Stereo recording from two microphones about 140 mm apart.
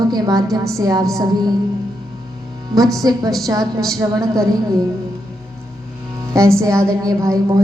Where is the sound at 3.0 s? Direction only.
25° right (ahead or behind).